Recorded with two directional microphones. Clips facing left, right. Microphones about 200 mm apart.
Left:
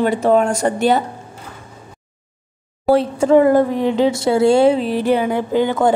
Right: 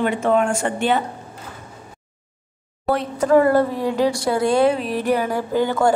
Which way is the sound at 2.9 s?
30° left (ahead or behind).